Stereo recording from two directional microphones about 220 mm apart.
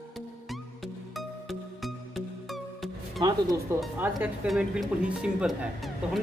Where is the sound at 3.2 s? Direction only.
15° right (ahead or behind).